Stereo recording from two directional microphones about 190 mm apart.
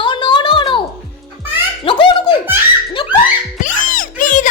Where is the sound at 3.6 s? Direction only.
45° left (ahead or behind).